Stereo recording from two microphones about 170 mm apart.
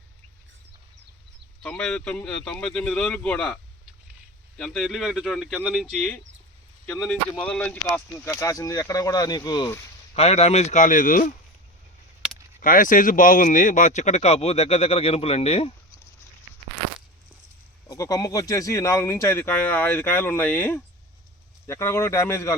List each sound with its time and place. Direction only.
1.6 s speech: 5° left (ahead or behind)
10.2 s speech: 40° left (ahead or behind)
12.5 s speech: 55° left (ahead or behind); by 15.7 s 35° left (ahead or behind)
17.8 s speech: 20° left (ahead or behind)